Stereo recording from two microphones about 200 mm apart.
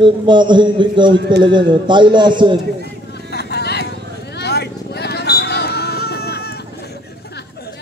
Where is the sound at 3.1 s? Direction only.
55° left (ahead or behind).